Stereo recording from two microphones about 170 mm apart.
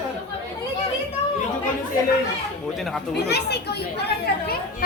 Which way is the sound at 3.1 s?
75° left (ahead or behind).